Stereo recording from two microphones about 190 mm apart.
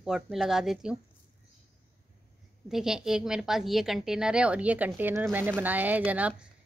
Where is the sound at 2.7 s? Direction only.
5° right (ahead or behind).